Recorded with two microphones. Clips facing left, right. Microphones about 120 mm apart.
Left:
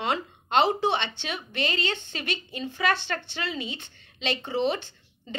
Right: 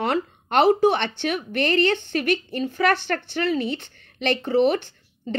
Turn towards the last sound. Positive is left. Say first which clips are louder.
# right 11 dB
turn(degrees=-50)  # may be behind; listen again after turning